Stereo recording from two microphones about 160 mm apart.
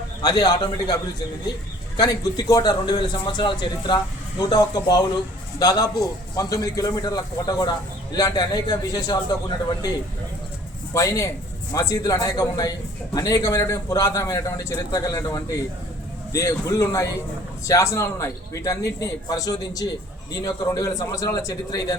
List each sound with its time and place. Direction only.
0.2 s a man's voice: 25° left (ahead or behind)
2.0 s a man's voice: 25° left (ahead or behind)
10.9 s a man's voice: 20° left (ahead or behind)